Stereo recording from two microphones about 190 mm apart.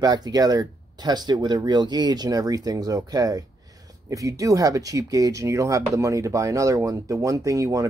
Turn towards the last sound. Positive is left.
turn(degrees=-15)  # may be behind; listen again after turning